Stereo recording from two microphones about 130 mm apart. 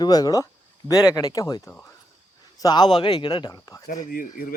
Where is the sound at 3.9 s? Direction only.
90° left.